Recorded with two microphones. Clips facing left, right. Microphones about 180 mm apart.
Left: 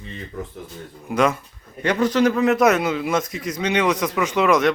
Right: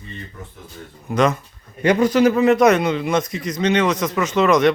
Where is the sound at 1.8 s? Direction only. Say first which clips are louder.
Right 3 dB; 10° right (ahead or behind).